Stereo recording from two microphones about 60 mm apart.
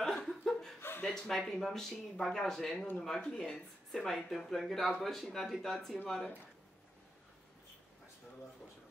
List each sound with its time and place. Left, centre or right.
0.0 s chuckle: centre
0.7 s chuckle: left
1.3 s speech: centre